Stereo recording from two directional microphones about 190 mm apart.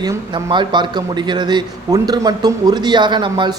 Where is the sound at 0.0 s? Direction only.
20° right (ahead or behind).